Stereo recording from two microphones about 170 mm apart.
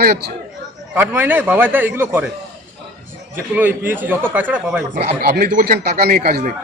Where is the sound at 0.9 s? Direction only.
10° right (ahead or behind).